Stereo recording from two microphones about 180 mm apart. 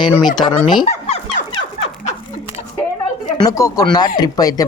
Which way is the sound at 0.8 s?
45° left (ahead or behind).